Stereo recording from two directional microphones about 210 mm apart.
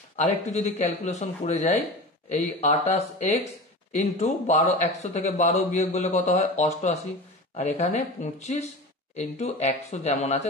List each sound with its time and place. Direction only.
0.1 s a man's voice: 30° left (ahead or behind)